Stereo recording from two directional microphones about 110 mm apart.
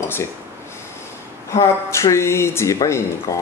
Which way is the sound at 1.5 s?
25° left (ahead or behind).